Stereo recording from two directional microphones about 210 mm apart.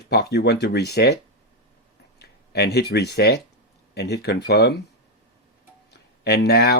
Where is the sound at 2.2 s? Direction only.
50° left (ahead or behind).